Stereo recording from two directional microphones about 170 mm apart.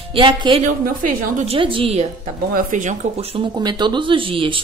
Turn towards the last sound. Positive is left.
turn(degrees=-30)  # may be behind; listen again after turning